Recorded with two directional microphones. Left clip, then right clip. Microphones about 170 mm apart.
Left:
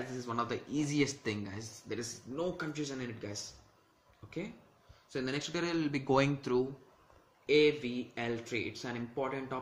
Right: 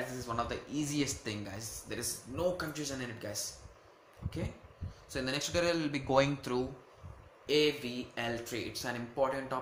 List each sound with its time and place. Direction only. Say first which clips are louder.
0.2 s speech: left 3 dB; 20° left (ahead or behind)
5.1 s speech: right 3 dB; 10° left (ahead or behind)